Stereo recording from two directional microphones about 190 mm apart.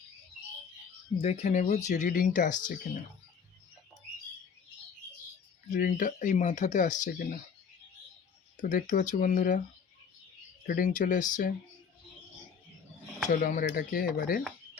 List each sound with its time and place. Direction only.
1.2 s speech: 35° left (ahead or behind)
5.7 s speech: 45° left (ahead or behind)
8.6 s speech: 40° left (ahead or behind)
10.7 s speech: 45° left (ahead or behind)
13.2 s speech: 45° left (ahead or behind)